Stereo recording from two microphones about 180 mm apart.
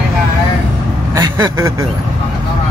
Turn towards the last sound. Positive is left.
turn(degrees=-15)  # may be behind; listen again after turning